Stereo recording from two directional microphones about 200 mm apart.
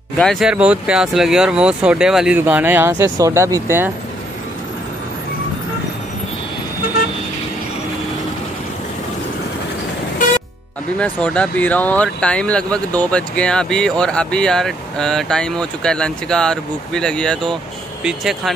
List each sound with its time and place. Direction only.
0.2 s speech: centre (ahead or behind)
11.0 s speech: 5° left (ahead or behind)